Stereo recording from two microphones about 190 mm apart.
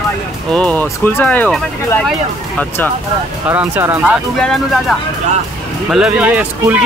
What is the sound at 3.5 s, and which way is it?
Speech, 10° right (ahead or behind).